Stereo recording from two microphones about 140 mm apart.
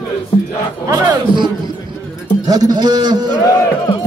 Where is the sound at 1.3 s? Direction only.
35° right (ahead or behind).